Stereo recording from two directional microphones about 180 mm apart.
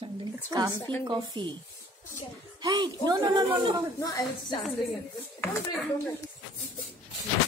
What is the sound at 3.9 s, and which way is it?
Speech, 15° left (ahead or behind).